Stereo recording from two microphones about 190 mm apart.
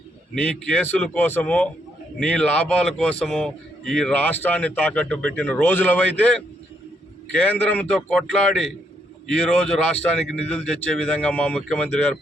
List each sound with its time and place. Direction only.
0.4 s a man's voice: 5° left (ahead or behind)
7.4 s a man's voice: 10° left (ahead or behind)